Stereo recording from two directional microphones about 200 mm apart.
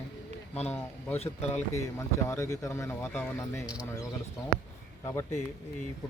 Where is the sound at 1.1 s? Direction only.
30° left (ahead or behind).